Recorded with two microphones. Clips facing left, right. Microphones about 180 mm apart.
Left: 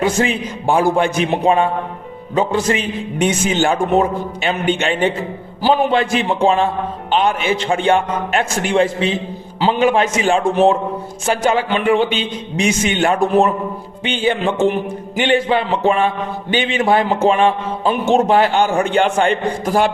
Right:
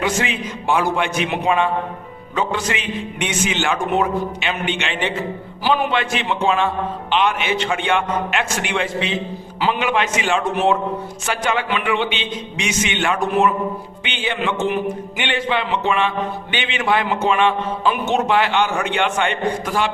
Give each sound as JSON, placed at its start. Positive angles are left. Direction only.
{"t": 0.0, "sound": "speech", "side_deg": 35}